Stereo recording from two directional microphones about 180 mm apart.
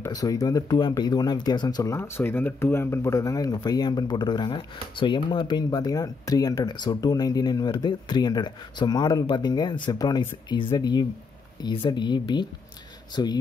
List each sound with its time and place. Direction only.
0.0 s speech: 20° left (ahead or behind)